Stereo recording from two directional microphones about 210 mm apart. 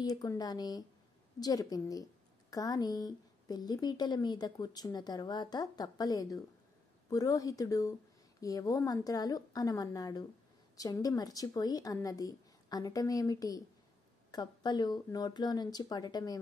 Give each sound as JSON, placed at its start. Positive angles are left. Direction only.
{"t": 0.0, "sound": "speech", "side_deg": 20}